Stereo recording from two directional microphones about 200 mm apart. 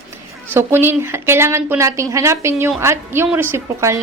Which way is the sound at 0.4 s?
10° right (ahead or behind).